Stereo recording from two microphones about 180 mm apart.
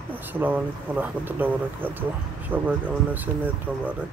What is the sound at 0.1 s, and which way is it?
Speech, 10° right (ahead or behind).